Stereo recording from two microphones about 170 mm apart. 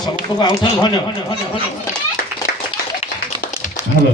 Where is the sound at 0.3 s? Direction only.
25° left (ahead or behind).